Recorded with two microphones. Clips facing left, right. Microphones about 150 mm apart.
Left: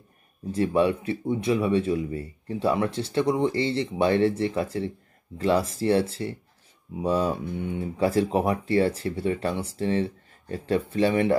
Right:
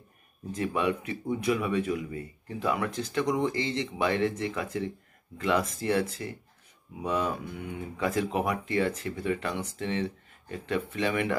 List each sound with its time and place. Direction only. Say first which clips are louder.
0.5 s speech: left 6 dB; 35° left (ahead or behind)